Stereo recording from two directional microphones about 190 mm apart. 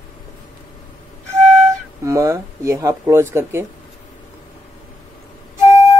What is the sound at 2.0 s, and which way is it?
Speech, 15° right (ahead or behind).